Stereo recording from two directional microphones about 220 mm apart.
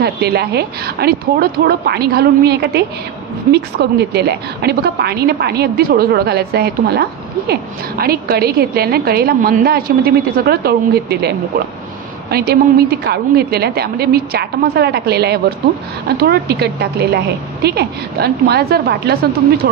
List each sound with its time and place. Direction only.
0.0 s a woman's voice: 45° right (ahead or behind)